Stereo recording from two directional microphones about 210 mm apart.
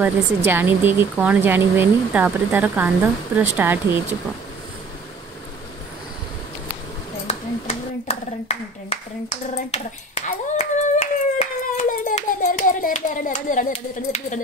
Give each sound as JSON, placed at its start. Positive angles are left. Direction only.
{"t": 0.0, "sound": "speech", "side_deg": -10}
{"t": 7.2, "sound": "clapping", "side_deg": 30}
{"t": 10.6, "sound": "hands", "side_deg": 35}